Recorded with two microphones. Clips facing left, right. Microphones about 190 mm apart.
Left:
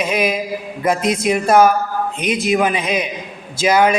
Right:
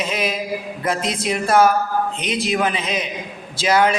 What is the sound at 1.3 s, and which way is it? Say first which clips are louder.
A man's voice: left 3 dB; 10° left (ahead or behind).